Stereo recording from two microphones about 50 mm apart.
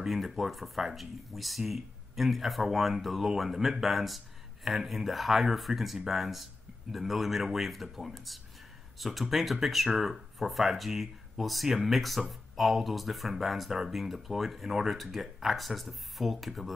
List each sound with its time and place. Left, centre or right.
0.0 s speech: centre